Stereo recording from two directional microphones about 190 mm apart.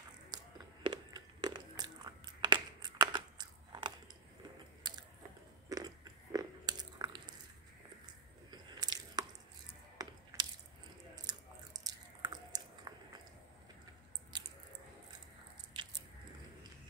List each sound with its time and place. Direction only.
0.3 s a sound: 20° right (ahead or behind)
0.8 s crunch: 25° right (ahead or behind)
4.8 s biting: 20° right (ahead or behind)
8.5 s biting: 20° right (ahead or behind)
11.2 s chewing: 20° right (ahead or behind)
14.3 s squish: 20° right (ahead or behind)
15.7 s squish: 25° right (ahead or behind)